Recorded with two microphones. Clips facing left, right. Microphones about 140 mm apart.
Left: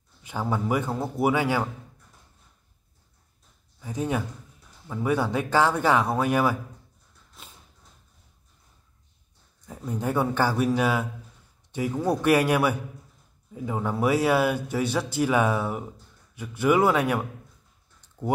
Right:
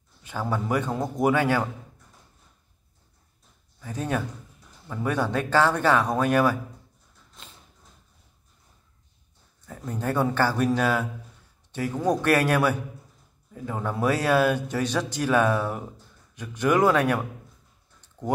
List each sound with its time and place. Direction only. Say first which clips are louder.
0.2 s a man's voice: left 1 dB; 15° left (ahead or behind)
3.8 s a man's voice: left 1 dB; 10° left (ahead or behind)
9.7 s a man's voice: even; 15° left (ahead or behind)
12.1 s a man's voice: even; 15° left (ahead or behind)